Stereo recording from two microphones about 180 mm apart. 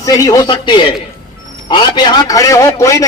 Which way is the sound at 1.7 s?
25° left (ahead or behind).